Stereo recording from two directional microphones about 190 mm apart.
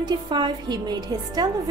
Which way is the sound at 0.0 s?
25° right (ahead or behind).